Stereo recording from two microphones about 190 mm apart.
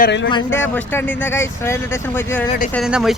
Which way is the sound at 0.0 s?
65° left (ahead or behind).